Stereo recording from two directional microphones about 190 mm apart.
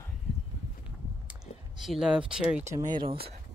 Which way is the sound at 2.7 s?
20° right (ahead or behind).